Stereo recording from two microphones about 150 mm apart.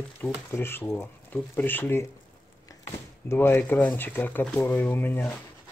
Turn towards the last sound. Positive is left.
turn(degrees=10)  # may be behind; listen again after turning